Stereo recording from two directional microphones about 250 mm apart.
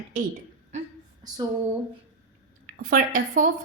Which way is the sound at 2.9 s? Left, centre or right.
Right.